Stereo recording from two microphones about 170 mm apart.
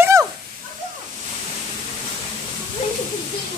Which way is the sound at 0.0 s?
15° right (ahead or behind).